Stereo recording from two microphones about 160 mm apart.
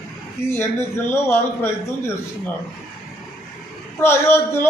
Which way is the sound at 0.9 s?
15° left (ahead or behind).